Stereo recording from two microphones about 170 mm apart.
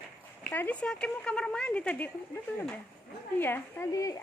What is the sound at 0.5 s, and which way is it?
Speech, 10° left (ahead or behind).